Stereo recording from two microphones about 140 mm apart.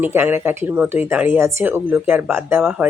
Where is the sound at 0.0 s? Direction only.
15° right (ahead or behind).